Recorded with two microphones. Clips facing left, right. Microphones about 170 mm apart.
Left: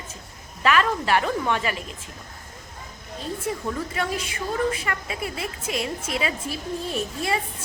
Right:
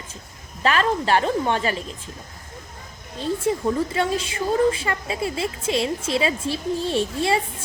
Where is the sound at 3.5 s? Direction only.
30° right (ahead or behind).